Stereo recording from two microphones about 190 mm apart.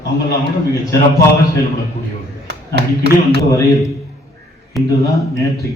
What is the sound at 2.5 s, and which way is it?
Speech, 60° right (ahead or behind).